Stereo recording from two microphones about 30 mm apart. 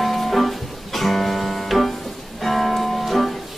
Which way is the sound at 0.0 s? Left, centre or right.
Centre.